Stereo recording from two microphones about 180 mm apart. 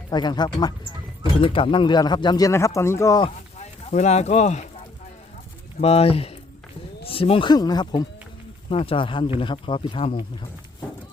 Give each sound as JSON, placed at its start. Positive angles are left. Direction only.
{"t": 0.1, "sound": "speech", "side_deg": 25}
{"t": 3.2, "sound": "speech", "side_deg": 35}
{"t": 5.8, "sound": "speech", "side_deg": 35}